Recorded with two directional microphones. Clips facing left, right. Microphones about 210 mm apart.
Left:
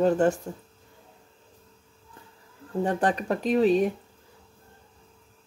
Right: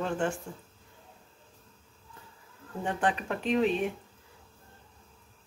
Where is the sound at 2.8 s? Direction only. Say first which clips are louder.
Left 5 dB; 40° left (ahead or behind).